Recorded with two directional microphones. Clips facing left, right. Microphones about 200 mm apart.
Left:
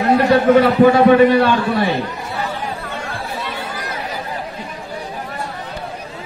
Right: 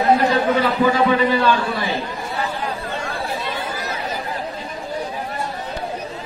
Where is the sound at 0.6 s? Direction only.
55° left (ahead or behind).